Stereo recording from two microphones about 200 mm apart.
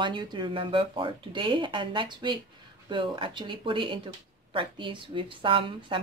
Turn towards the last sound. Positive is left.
turn(degrees=-25)  # may be behind; listen again after turning